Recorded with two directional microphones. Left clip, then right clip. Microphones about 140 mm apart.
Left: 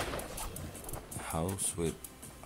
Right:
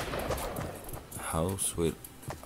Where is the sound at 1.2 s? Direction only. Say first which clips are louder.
Right 4 dB; 20° right (ahead or behind).